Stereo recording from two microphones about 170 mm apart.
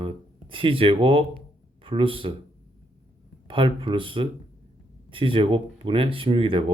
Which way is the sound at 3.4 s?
30° right (ahead or behind).